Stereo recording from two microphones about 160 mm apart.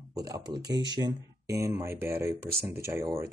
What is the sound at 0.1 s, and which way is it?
Speech, 25° right (ahead or behind).